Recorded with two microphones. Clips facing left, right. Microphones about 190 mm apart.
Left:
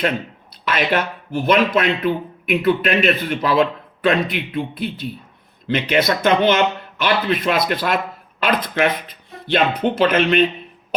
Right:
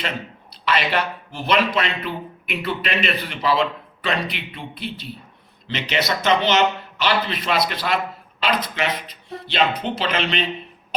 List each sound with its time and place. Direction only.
0.5 s speech: 50° left (ahead or behind)